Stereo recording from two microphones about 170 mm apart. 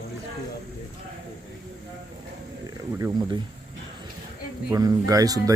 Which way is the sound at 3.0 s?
25° right (ahead or behind).